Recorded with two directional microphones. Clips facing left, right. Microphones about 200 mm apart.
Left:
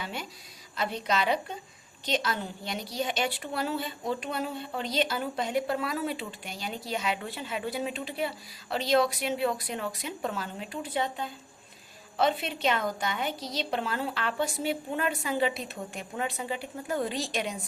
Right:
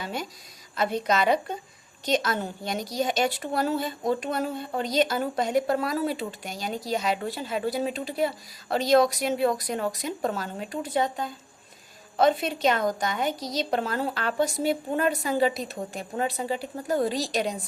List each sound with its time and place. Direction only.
0.0 s a woman's voice: 40° right (ahead or behind)